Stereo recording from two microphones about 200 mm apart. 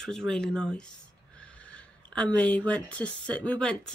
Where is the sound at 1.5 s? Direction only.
5° left (ahead or behind).